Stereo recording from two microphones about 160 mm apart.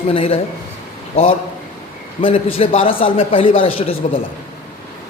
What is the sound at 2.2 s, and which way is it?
A man's voice, 35° left (ahead or behind).